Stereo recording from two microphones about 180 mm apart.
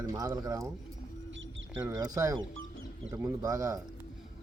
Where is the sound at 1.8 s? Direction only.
20° right (ahead or behind).